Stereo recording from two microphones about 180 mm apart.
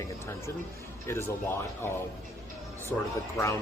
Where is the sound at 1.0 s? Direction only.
15° left (ahead or behind).